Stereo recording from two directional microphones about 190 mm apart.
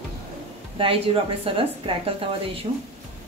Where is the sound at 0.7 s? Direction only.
30° right (ahead or behind).